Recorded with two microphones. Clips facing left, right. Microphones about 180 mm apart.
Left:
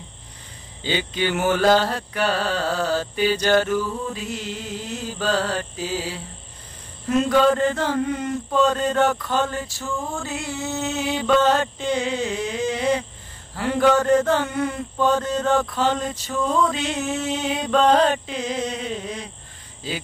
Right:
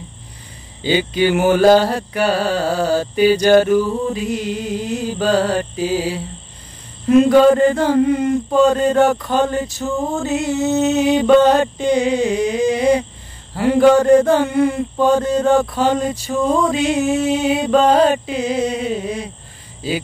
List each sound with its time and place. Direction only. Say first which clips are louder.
0.8 s music: right 8 dB; 10° right (ahead or behind)
9.9 s music: right 8 dB; 40° right (ahead or behind)
10.2 s music: right 11 dB; 20° right (ahead or behind)